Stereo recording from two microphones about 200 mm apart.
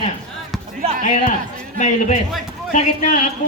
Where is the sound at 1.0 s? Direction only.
40° left (ahead or behind).